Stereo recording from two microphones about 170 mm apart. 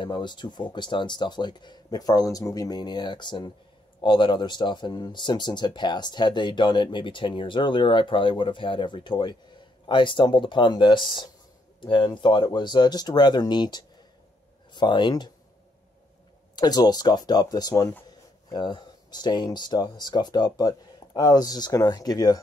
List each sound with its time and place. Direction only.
0.0 s speech: 25° left (ahead or behind)
16.5 s speech: 25° left (ahead or behind)